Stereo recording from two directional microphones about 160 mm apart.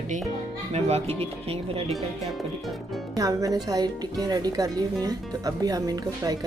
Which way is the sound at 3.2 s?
20° right (ahead or behind).